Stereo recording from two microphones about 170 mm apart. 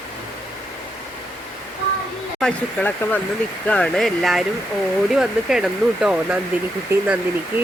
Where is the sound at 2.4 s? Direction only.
10° left (ahead or behind).